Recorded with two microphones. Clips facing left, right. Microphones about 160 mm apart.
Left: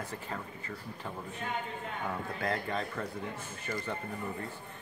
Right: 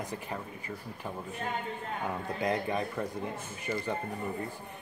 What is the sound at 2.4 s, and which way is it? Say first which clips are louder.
Speech: right 4 dB; 15° right (ahead or behind).